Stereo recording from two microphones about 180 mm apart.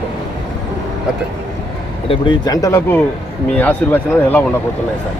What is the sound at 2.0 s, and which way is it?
Speech, 30° left (ahead or behind).